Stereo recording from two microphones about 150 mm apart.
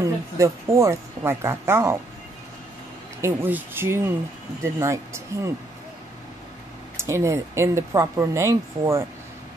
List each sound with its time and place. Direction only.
0.0 s speech: 20° right (ahead or behind)
3.2 s speech: 15° right (ahead or behind)
7.0 s speech: 20° right (ahead or behind)